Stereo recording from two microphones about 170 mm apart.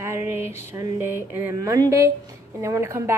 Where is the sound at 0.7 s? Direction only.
15° right (ahead or behind).